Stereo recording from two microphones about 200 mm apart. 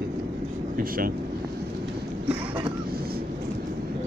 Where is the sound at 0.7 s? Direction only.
45° right (ahead or behind).